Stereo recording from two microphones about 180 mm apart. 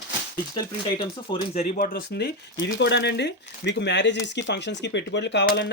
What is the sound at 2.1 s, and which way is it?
Speech, 70° left (ahead or behind).